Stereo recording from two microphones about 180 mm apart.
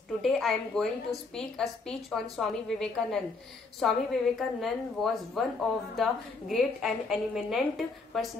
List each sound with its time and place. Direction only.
0.2 s a woman's voice: centre (ahead or behind)